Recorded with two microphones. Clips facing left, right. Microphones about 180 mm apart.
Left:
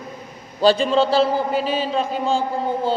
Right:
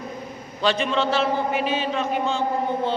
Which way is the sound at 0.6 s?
35° left (ahead or behind).